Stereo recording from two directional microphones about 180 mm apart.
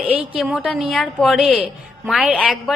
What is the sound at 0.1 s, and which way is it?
A woman's voice, 5° right (ahead or behind).